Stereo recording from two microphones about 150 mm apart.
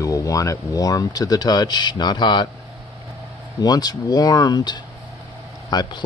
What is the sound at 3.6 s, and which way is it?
Speech, 25° left (ahead or behind).